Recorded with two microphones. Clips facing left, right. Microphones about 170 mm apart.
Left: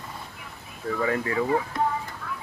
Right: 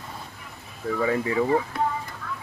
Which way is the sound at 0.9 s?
5° right (ahead or behind).